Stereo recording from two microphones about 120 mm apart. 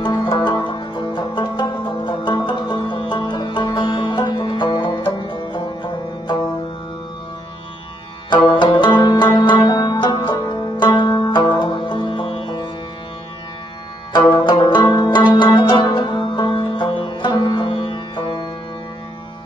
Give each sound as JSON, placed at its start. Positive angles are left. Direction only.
{"t": 0.0, "sound": "music", "side_deg": 35}
{"t": 8.5, "sound": "music", "side_deg": 45}
{"t": 14.1, "sound": "music", "side_deg": 40}